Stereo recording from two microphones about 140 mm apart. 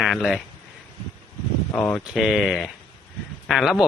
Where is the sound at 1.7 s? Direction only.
10° left (ahead or behind).